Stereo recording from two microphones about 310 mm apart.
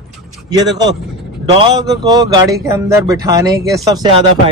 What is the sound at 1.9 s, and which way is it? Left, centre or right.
Speech, centre.